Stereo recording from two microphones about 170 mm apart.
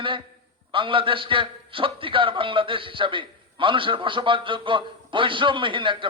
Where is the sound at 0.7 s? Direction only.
30° right (ahead or behind).